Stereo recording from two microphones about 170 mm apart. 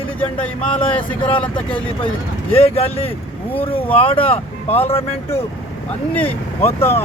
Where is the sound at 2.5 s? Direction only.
35° left (ahead or behind).